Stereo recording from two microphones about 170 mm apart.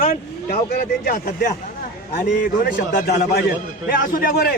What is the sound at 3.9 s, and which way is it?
Speech, 55° left (ahead or behind).